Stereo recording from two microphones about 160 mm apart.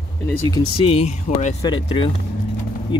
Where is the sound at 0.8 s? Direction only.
40° left (ahead or behind).